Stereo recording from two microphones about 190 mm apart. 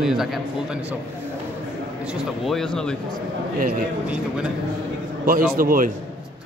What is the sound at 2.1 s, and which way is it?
Speech, centre (ahead or behind).